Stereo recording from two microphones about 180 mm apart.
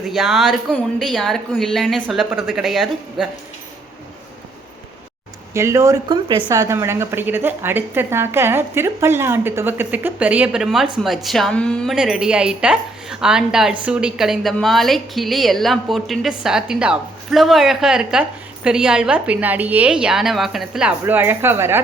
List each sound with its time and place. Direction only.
0.1 s a woman's voice: centre (ahead or behind)
5.5 s a woman's voice: 15° right (ahead or behind)